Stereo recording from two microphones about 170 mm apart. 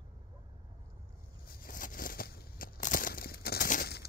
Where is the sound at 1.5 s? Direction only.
55° left (ahead or behind).